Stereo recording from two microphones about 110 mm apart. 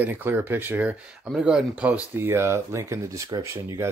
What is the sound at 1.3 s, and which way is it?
Speech, 5° right (ahead or behind).